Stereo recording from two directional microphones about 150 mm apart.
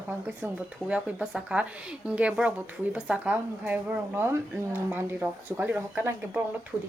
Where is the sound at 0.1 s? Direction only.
10° right (ahead or behind).